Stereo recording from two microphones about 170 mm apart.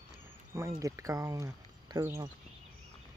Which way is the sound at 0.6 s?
20° right (ahead or behind).